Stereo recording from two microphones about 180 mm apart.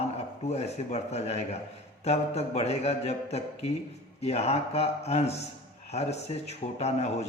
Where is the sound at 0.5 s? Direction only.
35° left (ahead or behind).